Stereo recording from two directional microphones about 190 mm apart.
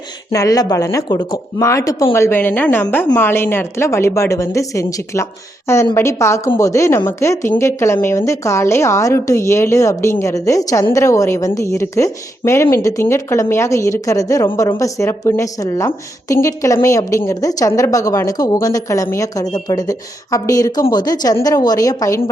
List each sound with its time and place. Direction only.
0.3 s a woman's voice: 15° left (ahead or behind)